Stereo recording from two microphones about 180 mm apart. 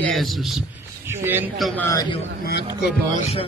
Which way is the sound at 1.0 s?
10° right (ahead or behind).